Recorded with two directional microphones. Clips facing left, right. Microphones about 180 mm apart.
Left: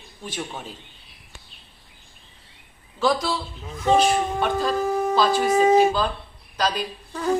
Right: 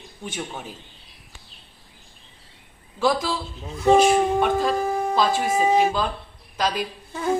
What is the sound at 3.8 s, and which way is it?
Speech, 10° right (ahead or behind).